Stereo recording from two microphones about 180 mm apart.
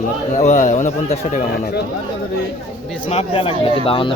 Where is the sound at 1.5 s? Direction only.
65° left (ahead or behind).